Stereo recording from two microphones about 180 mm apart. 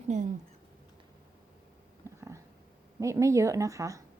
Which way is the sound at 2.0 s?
15° right (ahead or behind).